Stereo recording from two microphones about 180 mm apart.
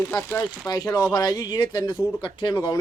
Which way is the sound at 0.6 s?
20° left (ahead or behind).